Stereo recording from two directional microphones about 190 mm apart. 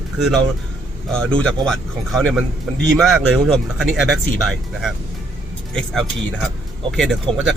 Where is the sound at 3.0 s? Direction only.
Centre (ahead or behind).